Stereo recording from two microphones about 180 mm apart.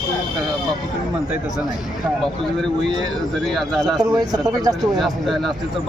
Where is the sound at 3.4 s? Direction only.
Centre (ahead or behind).